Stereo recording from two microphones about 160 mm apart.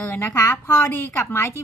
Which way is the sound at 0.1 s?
15° left (ahead or behind).